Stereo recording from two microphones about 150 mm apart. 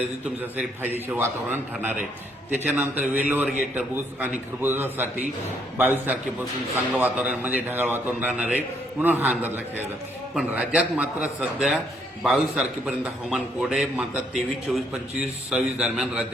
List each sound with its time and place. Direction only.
0.5 s a man's voice: 15° right (ahead or behind)
2.7 s a man's voice: 10° right (ahead or behind)